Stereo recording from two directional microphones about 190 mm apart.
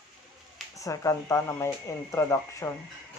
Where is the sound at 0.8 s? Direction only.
15° left (ahead or behind).